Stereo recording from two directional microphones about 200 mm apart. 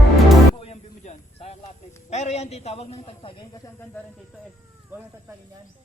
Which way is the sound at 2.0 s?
35° left (ahead or behind).